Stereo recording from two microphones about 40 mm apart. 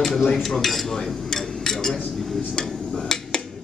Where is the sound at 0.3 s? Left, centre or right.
Centre.